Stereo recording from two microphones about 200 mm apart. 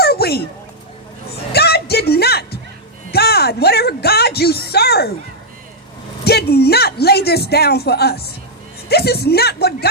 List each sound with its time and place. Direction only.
0.0 s a sound: 50° left (ahead or behind)
1.5 s music: 55° left (ahead or behind)
3.1 s speech: 50° left (ahead or behind)
6.2 s speech: 55° left (ahead or behind)